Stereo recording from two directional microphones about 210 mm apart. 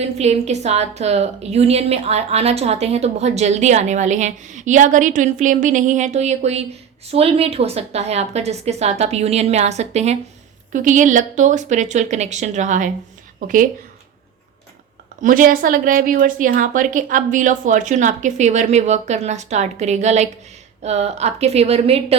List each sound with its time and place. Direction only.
0.0 s a woman's voice: 30° right (ahead or behind)
15.2 s a woman's voice: 40° right (ahead or behind)